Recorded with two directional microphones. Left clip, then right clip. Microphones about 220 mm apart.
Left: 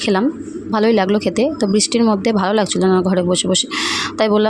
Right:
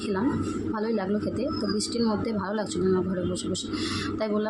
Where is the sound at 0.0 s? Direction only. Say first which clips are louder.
Left 10 dB; 40° left (ahead or behind).